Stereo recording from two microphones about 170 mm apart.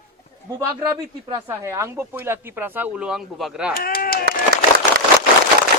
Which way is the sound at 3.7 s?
60° left (ahead or behind).